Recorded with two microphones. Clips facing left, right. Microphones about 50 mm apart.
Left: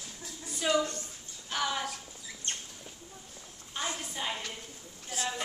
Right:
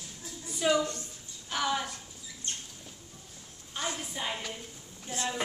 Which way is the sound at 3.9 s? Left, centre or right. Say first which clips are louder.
Even; centre.